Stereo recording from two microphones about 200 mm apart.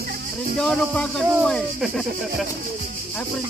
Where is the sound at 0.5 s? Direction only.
5° left (ahead or behind).